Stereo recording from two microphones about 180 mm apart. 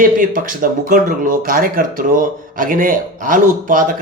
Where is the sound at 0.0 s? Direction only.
50° right (ahead or behind).